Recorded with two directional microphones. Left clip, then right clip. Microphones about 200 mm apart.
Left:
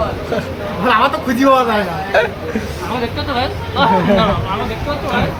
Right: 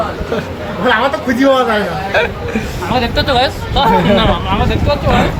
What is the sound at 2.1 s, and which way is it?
Speech, 5° right (ahead or behind).